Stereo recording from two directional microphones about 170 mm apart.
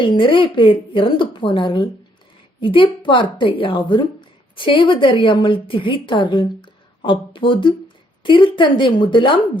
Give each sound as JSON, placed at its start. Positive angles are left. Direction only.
{"t": 0.0, "sound": "a woman's voice", "side_deg": 30}